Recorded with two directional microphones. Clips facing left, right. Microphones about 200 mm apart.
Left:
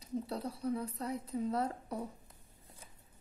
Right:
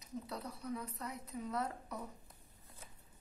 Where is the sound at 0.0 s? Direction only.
30° left (ahead or behind).